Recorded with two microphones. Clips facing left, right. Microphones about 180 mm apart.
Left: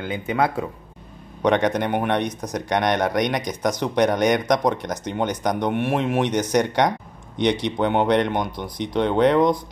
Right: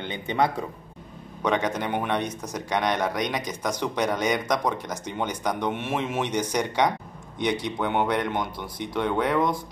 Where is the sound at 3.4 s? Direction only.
15° left (ahead or behind).